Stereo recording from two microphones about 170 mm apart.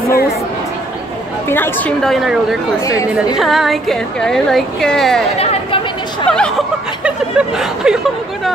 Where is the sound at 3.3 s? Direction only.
Centre (ahead or behind).